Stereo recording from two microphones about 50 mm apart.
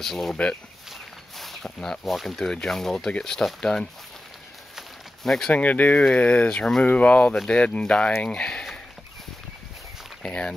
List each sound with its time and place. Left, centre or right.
0.0 s speech: centre
1.4 s speech: centre
5.2 s speech: centre
5.5 s speech: left
10.2 s speech: centre